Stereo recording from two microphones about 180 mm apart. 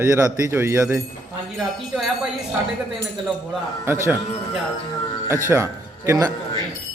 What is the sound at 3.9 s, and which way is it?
Speech, 15° right (ahead or behind).